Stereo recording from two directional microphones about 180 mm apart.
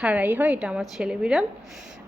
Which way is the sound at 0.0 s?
10° right (ahead or behind).